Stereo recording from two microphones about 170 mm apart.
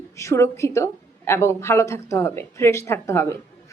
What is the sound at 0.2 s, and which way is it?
A woman's voice, 15° left (ahead or behind).